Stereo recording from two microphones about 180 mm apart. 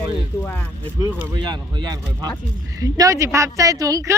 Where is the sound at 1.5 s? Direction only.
25° right (ahead or behind).